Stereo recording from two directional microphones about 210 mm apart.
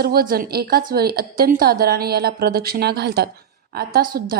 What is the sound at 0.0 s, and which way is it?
A woman's voice, 45° right (ahead or behind).